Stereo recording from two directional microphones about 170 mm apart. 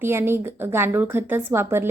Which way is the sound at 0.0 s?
15° right (ahead or behind).